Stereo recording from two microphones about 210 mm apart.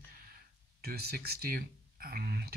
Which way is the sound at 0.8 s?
45° right (ahead or behind).